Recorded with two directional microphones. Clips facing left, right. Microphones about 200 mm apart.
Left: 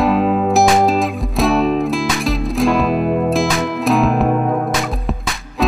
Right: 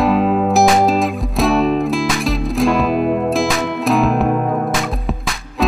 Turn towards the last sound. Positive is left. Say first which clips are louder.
# even
turn(degrees=0)  # may be behind; listen again after turning